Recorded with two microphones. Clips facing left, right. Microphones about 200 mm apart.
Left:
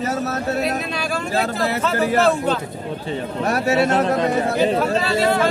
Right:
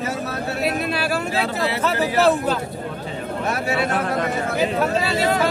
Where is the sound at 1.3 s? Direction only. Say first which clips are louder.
Left 2 dB; 45° left (ahead or behind).